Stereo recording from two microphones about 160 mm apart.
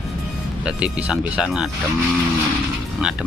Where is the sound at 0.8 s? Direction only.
5° right (ahead or behind).